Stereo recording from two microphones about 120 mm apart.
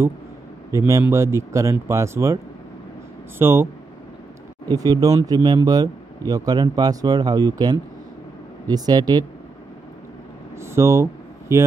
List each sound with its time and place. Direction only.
0.7 s a man's voice: 25° right (ahead or behind)
3.3 s speech: 20° right (ahead or behind)
4.6 s speech: 35° right (ahead or behind)
10.6 s a sound: 25° right (ahead or behind)